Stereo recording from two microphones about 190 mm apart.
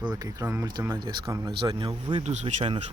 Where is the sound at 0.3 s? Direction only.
15° right (ahead or behind).